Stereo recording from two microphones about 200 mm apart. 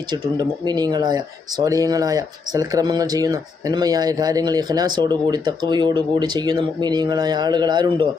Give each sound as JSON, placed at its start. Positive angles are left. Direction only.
{"t": 0.1, "sound": "speech", "side_deg": -20}